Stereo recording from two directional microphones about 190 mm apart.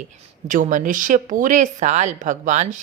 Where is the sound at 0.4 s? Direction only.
45° right (ahead or behind).